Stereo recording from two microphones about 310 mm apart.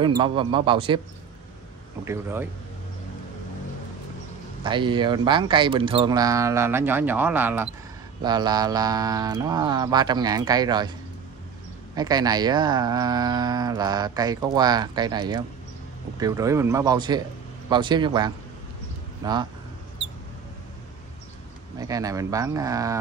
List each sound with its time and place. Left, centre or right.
0.0 s speech: centre
2.0 s speech: centre
4.6 s speech: centre
11.9 s speech: centre
21.7 s speech: centre